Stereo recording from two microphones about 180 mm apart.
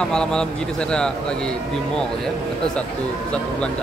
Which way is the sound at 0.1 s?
5° left (ahead or behind).